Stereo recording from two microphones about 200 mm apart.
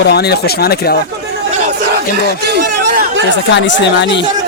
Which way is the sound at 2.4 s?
50° right (ahead or behind).